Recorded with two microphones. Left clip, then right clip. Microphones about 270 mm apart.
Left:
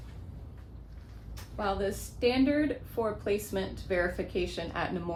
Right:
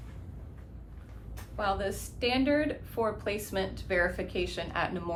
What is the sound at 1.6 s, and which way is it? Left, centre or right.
A woman's voice, right.